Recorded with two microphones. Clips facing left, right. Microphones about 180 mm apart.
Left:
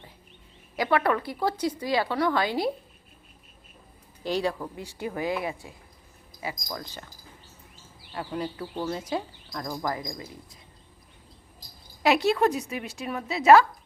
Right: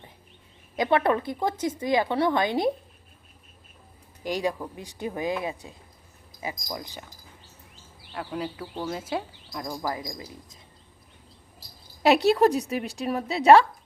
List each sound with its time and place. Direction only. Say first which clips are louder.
0.8 s a woman's voice: right 2 dB; 25° right (ahead or behind)
4.2 s a woman's voice: even; 15° right (ahead or behind)
8.1 s speech: even; centre (ahead or behind)
10.2 s a woman's voice: even; 25° right (ahead or behind)
12.3 s a woman's voice: right 4 dB; 35° right (ahead or behind)